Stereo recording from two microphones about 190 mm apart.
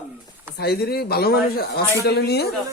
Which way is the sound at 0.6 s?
55° left (ahead or behind).